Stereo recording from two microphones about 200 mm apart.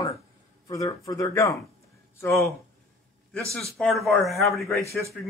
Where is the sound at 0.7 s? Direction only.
15° left (ahead or behind).